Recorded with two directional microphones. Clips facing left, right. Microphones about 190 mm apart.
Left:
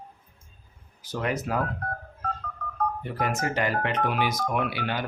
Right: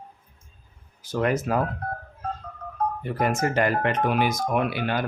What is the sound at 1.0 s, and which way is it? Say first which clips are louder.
Speech: right 5 dB; 50° right (ahead or behind).